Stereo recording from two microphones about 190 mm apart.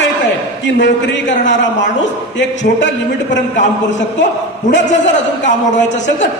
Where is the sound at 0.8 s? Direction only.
70° left (ahead or behind).